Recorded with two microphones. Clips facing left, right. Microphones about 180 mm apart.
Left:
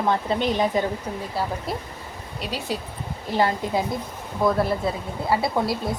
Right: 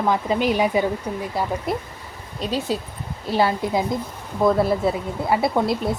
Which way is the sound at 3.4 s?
10° right (ahead or behind).